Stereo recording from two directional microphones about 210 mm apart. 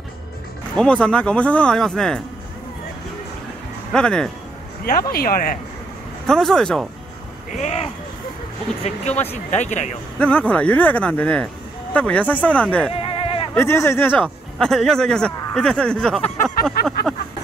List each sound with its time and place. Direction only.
0.7 s speech: 5° left (ahead or behind)
3.9 s speech: 5° left (ahead or behind)
5.1 s speech: 45° left (ahead or behind)
6.2 s speech: centre (ahead or behind)
7.5 s speech: 30° left (ahead or behind)
9.3 s speech: 35° left (ahead or behind)
10.1 s speech: 5° left (ahead or behind)
12.9 s a sound: 25° left (ahead or behind)
13.6 s speech: 10° left (ahead or behind)